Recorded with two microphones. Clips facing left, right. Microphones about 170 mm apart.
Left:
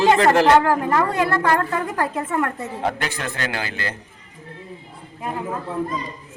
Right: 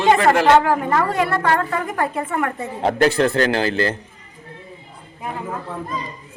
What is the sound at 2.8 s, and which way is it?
A man's voice, 35° right (ahead or behind).